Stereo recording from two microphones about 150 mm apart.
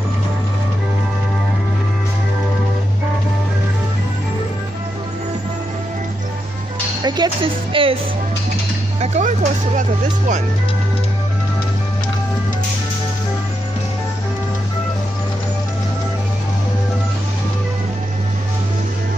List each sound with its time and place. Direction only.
7.0 s speech: 30° right (ahead or behind)
9.0 s speech: 50° right (ahead or behind)